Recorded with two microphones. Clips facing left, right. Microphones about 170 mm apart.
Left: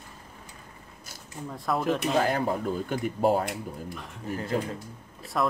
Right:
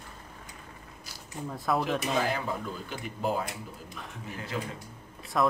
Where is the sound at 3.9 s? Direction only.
Centre (ahead or behind).